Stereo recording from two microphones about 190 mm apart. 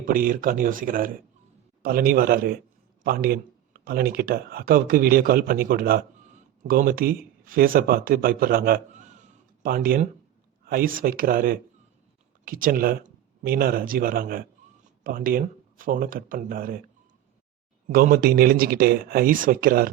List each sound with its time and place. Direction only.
0.0 s speech: 45° right (ahead or behind)
17.8 s speech: 50° right (ahead or behind)